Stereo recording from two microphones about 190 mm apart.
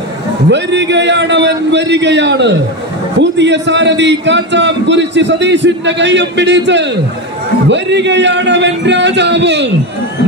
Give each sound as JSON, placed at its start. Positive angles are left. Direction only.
{"t": 0.5, "sound": "a man's voice", "side_deg": -65}